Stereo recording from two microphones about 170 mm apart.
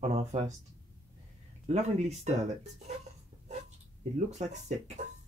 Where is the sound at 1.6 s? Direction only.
40° right (ahead or behind).